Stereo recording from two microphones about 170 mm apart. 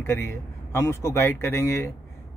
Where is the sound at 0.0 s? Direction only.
15° left (ahead or behind).